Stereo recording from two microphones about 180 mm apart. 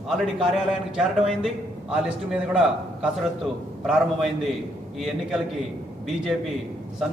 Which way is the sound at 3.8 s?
Centre (ahead or behind).